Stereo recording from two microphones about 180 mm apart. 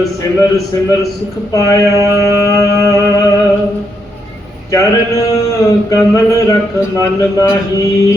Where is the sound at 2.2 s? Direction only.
20° left (ahead or behind).